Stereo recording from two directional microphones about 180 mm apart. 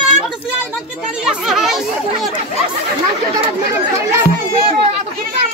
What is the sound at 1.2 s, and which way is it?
Speech, 5° right (ahead or behind).